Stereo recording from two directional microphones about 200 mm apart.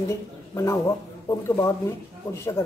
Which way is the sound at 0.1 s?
15° left (ahead or behind).